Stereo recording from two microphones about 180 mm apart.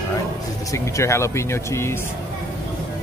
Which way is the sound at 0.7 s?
15° left (ahead or behind).